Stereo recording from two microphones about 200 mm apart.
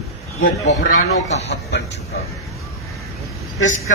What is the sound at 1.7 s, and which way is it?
Speech, 60° left (ahead or behind).